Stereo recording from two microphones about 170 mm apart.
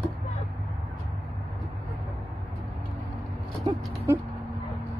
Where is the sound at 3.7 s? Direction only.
25° right (ahead or behind).